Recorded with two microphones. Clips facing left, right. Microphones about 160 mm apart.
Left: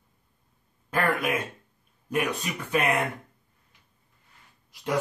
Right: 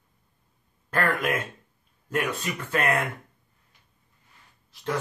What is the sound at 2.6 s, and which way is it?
Speech, 15° left (ahead or behind).